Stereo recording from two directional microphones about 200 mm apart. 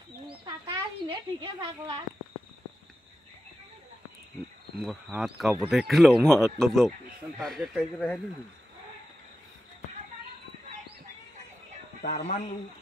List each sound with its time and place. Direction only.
0.3 s a sound: 25° right (ahead or behind)
4.7 s speech: centre (ahead or behind)
12.0 s speech: 35° left (ahead or behind)